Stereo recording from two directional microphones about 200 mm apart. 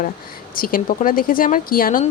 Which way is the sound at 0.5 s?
45° left (ahead or behind).